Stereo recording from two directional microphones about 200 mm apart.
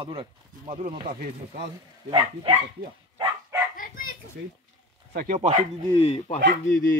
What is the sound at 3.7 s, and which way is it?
Bow-wow, 45° left (ahead or behind).